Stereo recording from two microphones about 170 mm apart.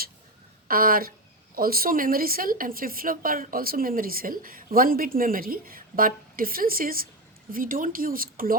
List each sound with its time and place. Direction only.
0.7 s a woman's voice: 55° right (ahead or behind)